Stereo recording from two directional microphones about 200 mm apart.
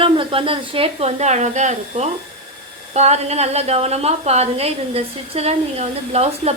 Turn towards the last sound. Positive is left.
turn(degrees=-30)  # may be behind; listen again after turning